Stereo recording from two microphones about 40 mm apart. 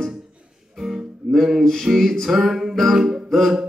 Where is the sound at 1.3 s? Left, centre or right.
Centre.